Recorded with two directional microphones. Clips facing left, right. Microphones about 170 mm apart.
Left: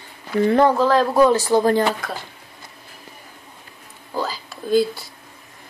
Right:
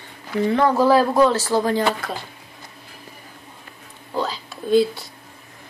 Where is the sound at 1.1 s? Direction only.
15° left (ahead or behind).